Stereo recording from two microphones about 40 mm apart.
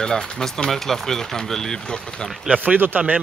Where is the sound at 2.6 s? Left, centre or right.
Right.